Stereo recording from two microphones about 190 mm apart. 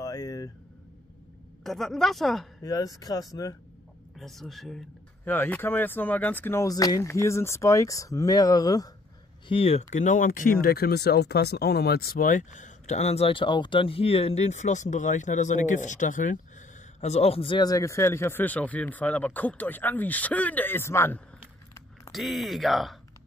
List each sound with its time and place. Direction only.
0.0 s a sound: 20° left (ahead or behind)
1.6 s a woman's voice: centre (ahead or behind)
2.6 s speech: 20° left (ahead or behind)
4.2 s speech: centre (ahead or behind); by 8.9 s 20° left (ahead or behind)
9.5 s speech: 30° left (ahead or behind); by 21.2 s 10° left (ahead or behind)
22.1 s a woman's voice: centre (ahead or behind)